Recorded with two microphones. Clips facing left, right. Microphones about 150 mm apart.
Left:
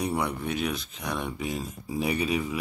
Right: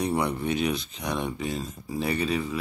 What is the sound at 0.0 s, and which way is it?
Speech, 5° left (ahead or behind).